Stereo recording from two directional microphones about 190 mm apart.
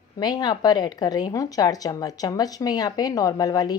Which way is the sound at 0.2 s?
20° left (ahead or behind).